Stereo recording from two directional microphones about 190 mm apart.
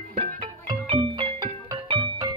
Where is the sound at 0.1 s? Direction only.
30° right (ahead or behind).